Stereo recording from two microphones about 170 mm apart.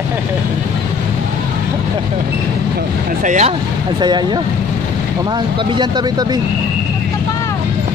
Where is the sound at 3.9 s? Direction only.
25° right (ahead or behind).